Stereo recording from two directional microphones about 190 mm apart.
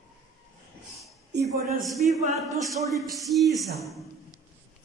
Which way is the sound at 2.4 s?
Centre (ahead or behind).